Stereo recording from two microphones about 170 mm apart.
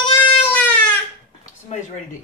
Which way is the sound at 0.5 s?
10° left (ahead or behind).